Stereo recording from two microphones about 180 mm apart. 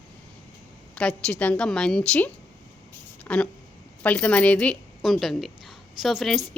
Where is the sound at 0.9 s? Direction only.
5° left (ahead or behind).